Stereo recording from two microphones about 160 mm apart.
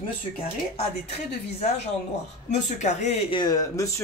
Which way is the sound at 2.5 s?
45° left (ahead or behind).